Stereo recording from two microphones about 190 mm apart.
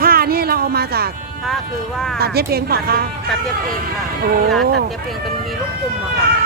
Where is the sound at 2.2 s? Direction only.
55° right (ahead or behind).